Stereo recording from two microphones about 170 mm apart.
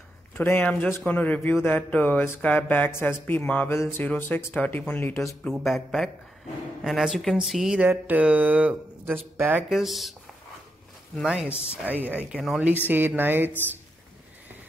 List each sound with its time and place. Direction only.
0.4 s speech: 10° left (ahead or behind)
11.7 s speech: 10° right (ahead or behind)